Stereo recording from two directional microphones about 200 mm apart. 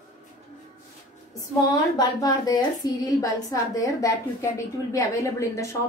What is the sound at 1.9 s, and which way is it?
A woman's voice, 20° left (ahead or behind).